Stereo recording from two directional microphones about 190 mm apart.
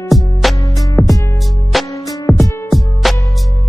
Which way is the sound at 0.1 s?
Centre (ahead or behind).